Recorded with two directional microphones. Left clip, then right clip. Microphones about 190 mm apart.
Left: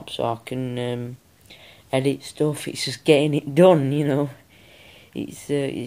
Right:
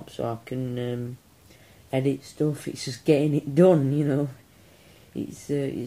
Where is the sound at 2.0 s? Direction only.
50° left (ahead or behind).